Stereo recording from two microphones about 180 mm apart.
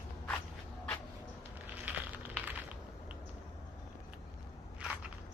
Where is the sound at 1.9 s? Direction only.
10° right (ahead or behind).